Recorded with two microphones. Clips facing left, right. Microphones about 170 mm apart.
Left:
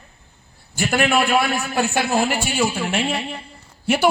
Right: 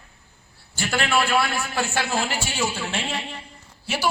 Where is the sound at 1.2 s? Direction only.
15° left (ahead or behind).